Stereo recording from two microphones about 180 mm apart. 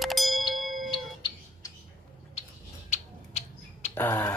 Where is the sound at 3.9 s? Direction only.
10° left (ahead or behind).